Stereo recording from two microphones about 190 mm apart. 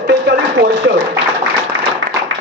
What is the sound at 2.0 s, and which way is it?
Tap, 90° right.